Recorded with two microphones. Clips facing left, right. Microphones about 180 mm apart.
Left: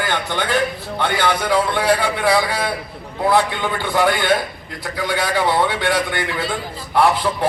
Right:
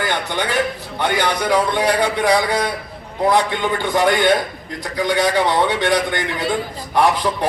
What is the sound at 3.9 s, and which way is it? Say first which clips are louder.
A man's voice: right 1 dB; 20° right (ahead or behind).